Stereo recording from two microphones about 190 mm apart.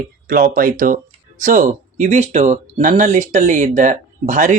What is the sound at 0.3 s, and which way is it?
Speech, 45° right (ahead or behind).